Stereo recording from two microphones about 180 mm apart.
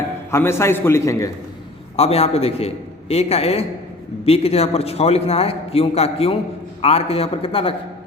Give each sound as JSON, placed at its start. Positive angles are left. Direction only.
{"t": 0.3, "sound": "a man's voice", "side_deg": 15}
{"t": 2.0, "sound": "a man's voice", "side_deg": 35}